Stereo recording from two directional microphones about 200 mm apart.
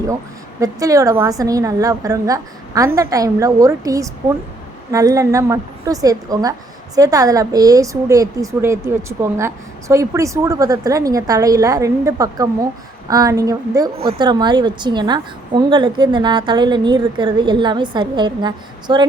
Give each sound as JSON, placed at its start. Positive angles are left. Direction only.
{"t": 0.6, "sound": "a woman's voice", "side_deg": -15}